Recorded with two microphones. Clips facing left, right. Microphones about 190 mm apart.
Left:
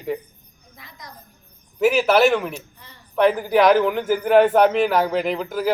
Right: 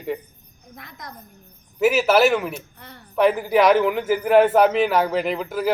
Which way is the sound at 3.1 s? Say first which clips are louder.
Left 1 dB; centre (ahead or behind).